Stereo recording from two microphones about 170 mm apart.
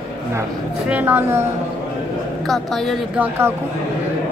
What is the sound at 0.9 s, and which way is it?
Speech, 10° right (ahead or behind).